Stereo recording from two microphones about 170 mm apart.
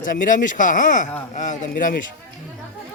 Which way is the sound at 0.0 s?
50° left (ahead or behind).